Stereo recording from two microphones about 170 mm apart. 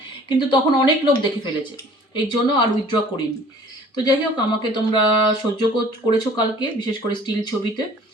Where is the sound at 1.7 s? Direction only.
25° left (ahead or behind).